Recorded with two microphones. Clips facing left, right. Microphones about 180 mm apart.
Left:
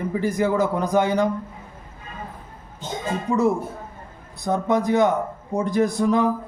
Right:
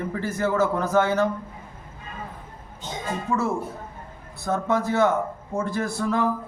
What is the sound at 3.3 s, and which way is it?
A man's voice, 15° left (ahead or behind).